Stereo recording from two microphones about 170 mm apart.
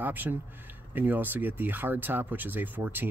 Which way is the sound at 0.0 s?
10° right (ahead or behind).